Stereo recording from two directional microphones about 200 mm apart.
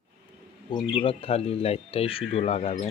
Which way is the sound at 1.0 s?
25° left (ahead or behind).